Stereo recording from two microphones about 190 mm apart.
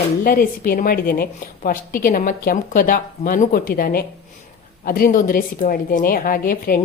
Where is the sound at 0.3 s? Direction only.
50° left (ahead or behind).